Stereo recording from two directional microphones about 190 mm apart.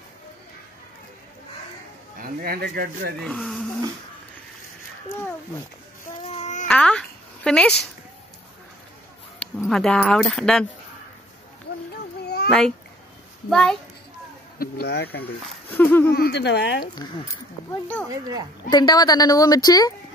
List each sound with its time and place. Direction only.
2.1 s speech: 50° right (ahead or behind)
3.2 s speech: centre (ahead or behind)
6.1 s child singing: 35° left (ahead or behind)
6.7 s a sound: 5° left (ahead or behind)
9.6 s speech: 5° left (ahead or behind)
11.9 s a sound: 60° left (ahead or behind)
12.4 s a child's voice: 5° left (ahead or behind)
14.6 s speech: 55° left (ahead or behind)
15.7 s speech: 10° left (ahead or behind)
16.1 s speech: 60° left (ahead or behind)
17.6 s speech: 10° left (ahead or behind)
18.0 s speech: 20° right (ahead or behind)
18.7 s speech: 20° left (ahead or behind)